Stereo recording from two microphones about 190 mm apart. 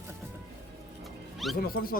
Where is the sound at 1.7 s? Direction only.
50° left (ahead or behind).